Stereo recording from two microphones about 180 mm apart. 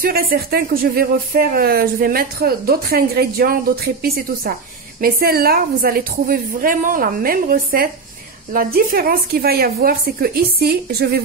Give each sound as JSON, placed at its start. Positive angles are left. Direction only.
{"t": 0.0, "sound": "speech", "side_deg": -55}